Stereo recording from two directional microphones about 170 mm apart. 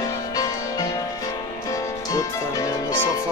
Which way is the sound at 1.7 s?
20° left (ahead or behind).